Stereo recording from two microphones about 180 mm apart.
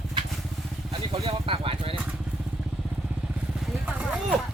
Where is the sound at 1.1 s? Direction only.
25° right (ahead or behind).